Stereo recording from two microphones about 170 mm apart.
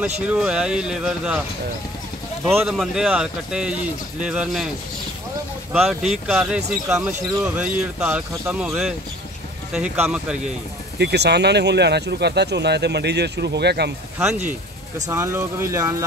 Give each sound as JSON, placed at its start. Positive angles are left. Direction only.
{"t": 0.0, "sound": "speech", "side_deg": -5}
{"t": 2.6, "sound": "speech", "side_deg": 0}
{"t": 5.7, "sound": "speech", "side_deg": 0}
{"t": 11.0, "sound": "speech", "side_deg": -80}
{"t": 15.0, "sound": "speech", "side_deg": -15}